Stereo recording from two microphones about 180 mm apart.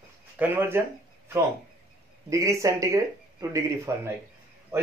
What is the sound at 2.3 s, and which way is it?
Speech, 15° right (ahead or behind).